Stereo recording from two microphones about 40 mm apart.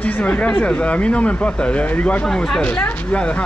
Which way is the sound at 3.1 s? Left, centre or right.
Left.